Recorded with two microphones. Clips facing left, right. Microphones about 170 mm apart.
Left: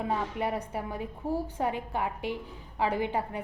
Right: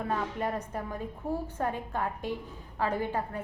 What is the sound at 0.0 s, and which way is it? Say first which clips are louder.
A woman's voice: left 1 dB; 10° left (ahead or behind).